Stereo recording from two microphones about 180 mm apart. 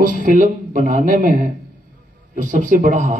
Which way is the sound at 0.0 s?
45° right (ahead or behind).